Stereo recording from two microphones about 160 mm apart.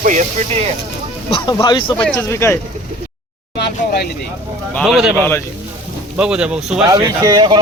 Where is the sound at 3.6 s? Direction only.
85° left.